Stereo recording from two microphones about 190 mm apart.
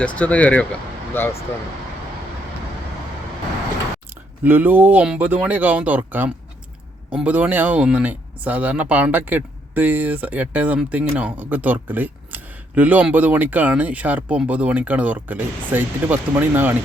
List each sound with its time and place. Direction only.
0.0 s speech: 5° left (ahead or behind)
4.4 s speech: 10° right (ahead or behind)